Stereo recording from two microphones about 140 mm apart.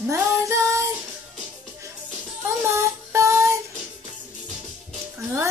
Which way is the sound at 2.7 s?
20° right (ahead or behind).